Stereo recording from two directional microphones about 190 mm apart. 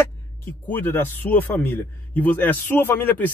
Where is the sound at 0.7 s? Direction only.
10° left (ahead or behind).